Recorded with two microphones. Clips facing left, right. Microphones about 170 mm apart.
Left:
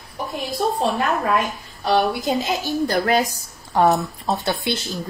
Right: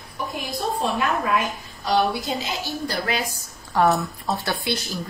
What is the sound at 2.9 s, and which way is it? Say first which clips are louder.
Speech: left 7 dB; 45° left (ahead or behind).